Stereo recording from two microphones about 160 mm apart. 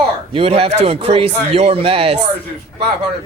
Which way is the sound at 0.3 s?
35° right (ahead or behind).